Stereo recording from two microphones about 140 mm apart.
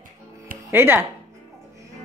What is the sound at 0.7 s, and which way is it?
Speech, 15° right (ahead or behind).